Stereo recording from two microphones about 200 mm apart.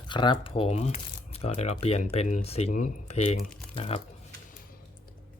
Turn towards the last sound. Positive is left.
turn(degrees=30)  # may be behind; listen again after turning